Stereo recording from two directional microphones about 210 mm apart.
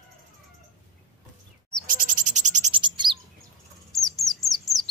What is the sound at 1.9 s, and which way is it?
Frog, 40° right (ahead or behind).